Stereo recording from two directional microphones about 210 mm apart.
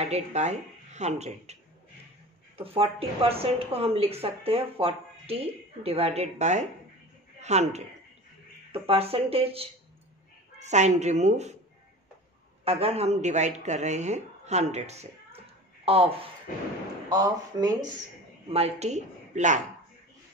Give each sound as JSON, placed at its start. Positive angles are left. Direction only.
{"t": 0.0, "sound": "a woman's voice", "side_deg": -30}
{"t": 12.6, "sound": "a woman's voice", "side_deg": -30}
{"t": 17.1, "sound": "speech", "side_deg": -15}
{"t": 18.5, "sound": "a woman's voice", "side_deg": -30}